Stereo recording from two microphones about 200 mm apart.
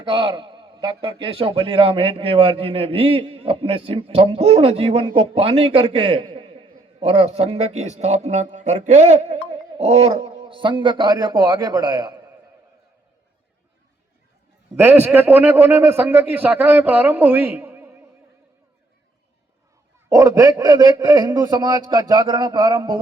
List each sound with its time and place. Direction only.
0.1 s a man's voice: 25° right (ahead or behind)
14.8 s a man's voice: 10° right (ahead or behind)
20.1 s a man's voice: 15° right (ahead or behind)